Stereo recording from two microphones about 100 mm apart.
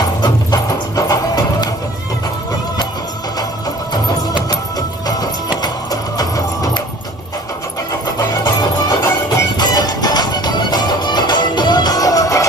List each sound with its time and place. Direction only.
0.2 s music: 40° left (ahead or behind)
8.5 s music: 40° left (ahead or behind)